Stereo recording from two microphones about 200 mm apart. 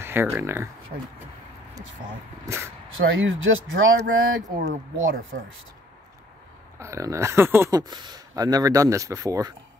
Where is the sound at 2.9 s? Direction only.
80° right.